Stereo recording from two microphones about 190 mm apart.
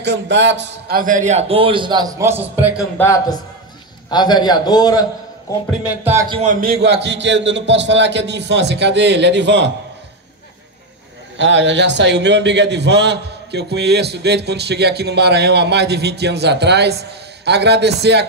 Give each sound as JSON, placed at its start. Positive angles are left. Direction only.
{"t": 0.0, "sound": "a man's voice", "side_deg": -70}
{"t": 3.0, "sound": "a man's voice", "side_deg": 15}
{"t": 5.9, "sound": "speech", "side_deg": -10}
{"t": 6.4, "sound": "a man's voice", "side_deg": -45}
{"t": 11.3, "sound": "a man's voice", "side_deg": -70}